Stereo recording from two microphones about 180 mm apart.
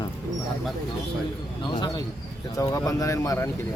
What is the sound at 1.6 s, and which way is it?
Speech, 25° left (ahead or behind).